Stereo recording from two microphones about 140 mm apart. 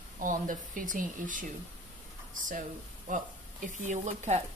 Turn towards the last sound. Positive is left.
turn(degrees=-55)  # may be behind; listen again after turning